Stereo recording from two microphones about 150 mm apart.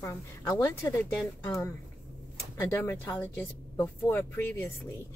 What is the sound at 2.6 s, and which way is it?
A woman's voice, 15° left (ahead or behind).